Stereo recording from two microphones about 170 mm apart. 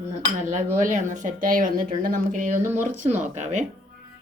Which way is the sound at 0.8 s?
50° right (ahead or behind).